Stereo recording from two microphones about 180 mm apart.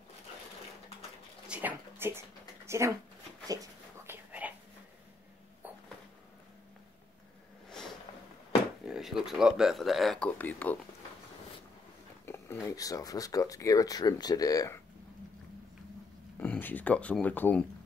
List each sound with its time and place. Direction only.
1.5 s a sound: 10° right (ahead or behind)
3.4 s dog: 15° right (ahead or behind)
8.8 s speech: centre (ahead or behind)
12.3 s a sound: 15° left (ahead or behind)
12.6 s speech: 20° left (ahead or behind)
16.3 s speech: 10° left (ahead or behind)